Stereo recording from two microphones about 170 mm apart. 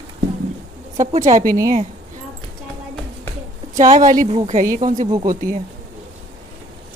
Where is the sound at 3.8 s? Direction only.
50° right (ahead or behind).